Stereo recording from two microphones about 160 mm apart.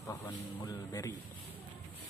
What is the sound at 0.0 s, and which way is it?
Speech, 20° left (ahead or behind).